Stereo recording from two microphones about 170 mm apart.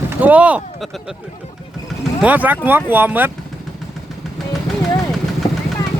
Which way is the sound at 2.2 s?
10° right (ahead or behind).